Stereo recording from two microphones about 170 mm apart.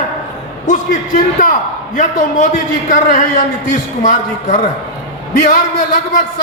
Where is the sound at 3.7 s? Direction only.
45° left (ahead or behind).